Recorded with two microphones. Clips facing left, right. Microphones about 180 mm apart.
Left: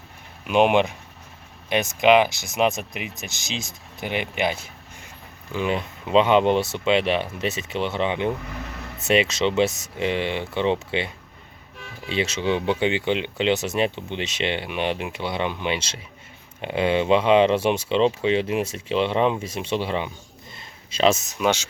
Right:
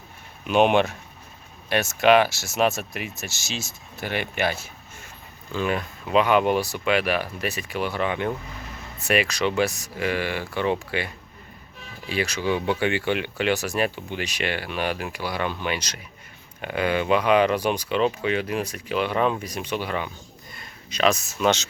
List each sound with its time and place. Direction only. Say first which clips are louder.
0.4 s speech: left 1 dB; 10° left (ahead or behind)